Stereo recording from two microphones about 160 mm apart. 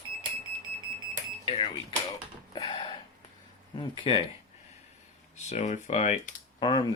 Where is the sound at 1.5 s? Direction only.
35° left (ahead or behind).